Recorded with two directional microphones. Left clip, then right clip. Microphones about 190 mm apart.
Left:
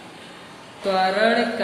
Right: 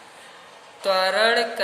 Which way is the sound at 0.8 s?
55° right (ahead or behind).